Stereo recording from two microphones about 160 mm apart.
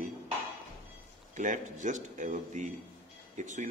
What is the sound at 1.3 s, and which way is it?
Speech, 50° right (ahead or behind).